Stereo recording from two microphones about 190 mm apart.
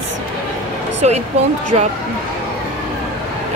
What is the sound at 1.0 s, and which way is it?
Speech, 40° right (ahead or behind).